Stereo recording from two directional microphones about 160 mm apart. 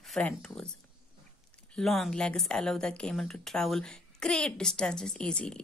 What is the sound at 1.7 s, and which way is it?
A woman's voice, centre (ahead or behind).